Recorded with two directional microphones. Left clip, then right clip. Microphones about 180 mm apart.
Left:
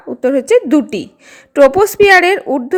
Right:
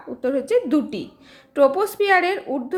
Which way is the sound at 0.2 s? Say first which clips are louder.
Left 9 dB; 40° left (ahead or behind).